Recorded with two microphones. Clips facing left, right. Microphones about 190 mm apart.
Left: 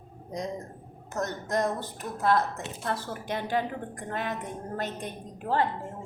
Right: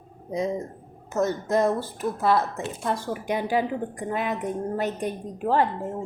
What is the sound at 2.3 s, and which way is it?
A woman's voice, 10° right (ahead or behind).